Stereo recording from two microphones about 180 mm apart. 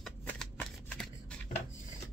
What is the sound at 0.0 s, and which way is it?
Shuffling cards, 5° left (ahead or behind).